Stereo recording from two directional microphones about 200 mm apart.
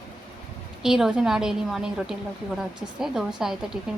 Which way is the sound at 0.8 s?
5° right (ahead or behind).